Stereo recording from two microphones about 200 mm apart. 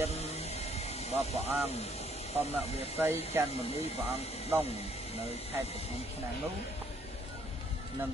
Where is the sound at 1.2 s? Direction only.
30° left (ahead or behind).